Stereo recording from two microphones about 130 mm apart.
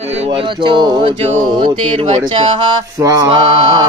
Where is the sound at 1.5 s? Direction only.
40° right (ahead or behind).